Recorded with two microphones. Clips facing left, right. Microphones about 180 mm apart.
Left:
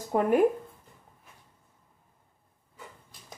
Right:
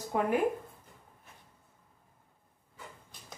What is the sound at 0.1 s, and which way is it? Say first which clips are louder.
Speech: left 5 dB; 45° left (ahead or behind).